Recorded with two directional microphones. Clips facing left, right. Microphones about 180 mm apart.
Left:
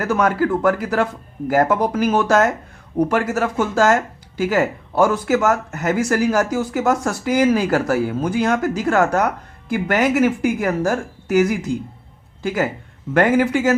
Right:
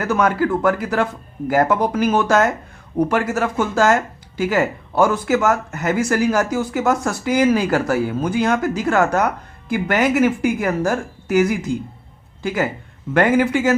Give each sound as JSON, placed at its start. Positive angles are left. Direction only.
{"t": 0.0, "sound": "speech", "side_deg": 40}